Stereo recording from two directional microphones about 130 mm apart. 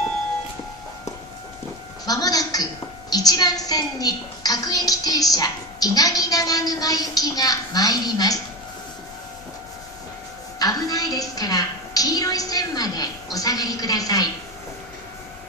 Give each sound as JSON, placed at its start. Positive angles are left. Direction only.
{"t": 2.0, "sound": "a woman's voice", "side_deg": 30}
{"t": 10.6, "sound": "a woman's voice", "side_deg": 30}